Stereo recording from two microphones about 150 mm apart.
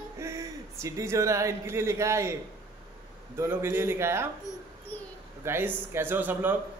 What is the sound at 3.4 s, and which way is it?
Speech, 15° right (ahead or behind).